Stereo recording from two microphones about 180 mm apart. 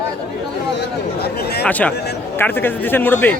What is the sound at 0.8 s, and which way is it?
Speech, 65° left (ahead or behind).